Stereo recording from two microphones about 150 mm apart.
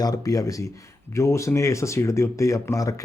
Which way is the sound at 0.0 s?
25° left (ahead or behind).